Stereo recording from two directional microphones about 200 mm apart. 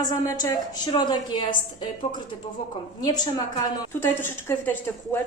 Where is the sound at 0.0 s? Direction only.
20° left (ahead or behind).